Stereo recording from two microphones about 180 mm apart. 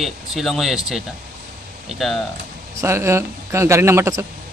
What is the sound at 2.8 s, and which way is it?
A man's voice, 15° right (ahead or behind).